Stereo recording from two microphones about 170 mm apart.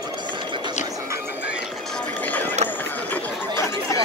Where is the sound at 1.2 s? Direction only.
90° left.